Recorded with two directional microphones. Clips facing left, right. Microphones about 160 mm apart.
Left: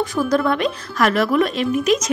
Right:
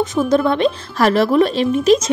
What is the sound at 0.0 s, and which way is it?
Speech, 20° right (ahead or behind).